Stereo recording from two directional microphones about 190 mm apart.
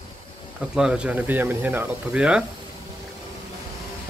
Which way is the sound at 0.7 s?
5° right (ahead or behind).